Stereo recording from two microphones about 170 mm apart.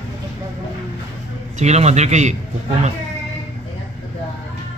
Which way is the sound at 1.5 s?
40° right (ahead or behind).